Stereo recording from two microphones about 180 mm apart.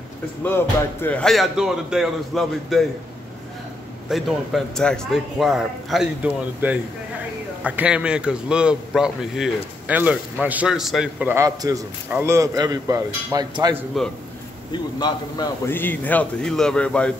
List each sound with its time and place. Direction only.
0.4 s speech: 10° left (ahead or behind)
4.1 s speech: centre (ahead or behind); by 13.7 s 20° right (ahead or behind)
14.0 s speech: centre (ahead or behind)
14.7 s a man's voice: 25° left (ahead or behind); by 17.1 s 5° left (ahead or behind)